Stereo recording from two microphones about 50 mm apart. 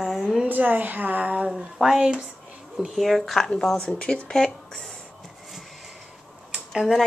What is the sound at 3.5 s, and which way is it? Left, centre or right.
Speech, centre.